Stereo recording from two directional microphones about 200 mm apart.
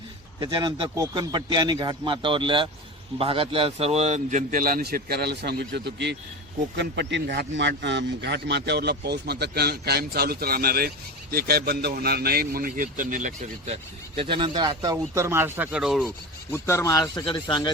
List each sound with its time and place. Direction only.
0.3 s a man's voice: 20° right (ahead or behind); by 13.7 s 40° right (ahead or behind)
14.2 s speech: 25° right (ahead or behind); by 16.1 s centre (ahead or behind)
16.5 s a man's voice: 15° left (ahead or behind)